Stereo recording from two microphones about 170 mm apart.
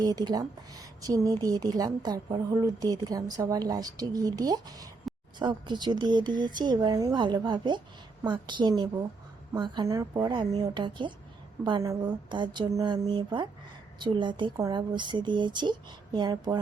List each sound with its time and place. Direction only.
0.0 s a woman's voice: 25° right (ahead or behind)